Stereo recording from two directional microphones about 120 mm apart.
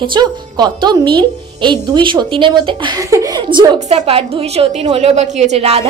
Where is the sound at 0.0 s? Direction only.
40° right (ahead or behind).